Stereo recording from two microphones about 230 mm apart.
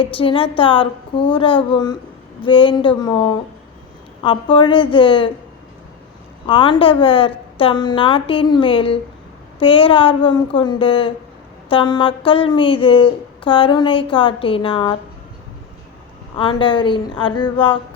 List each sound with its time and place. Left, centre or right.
0.0 s speech: left
6.4 s speech: left
16.4 s speech: left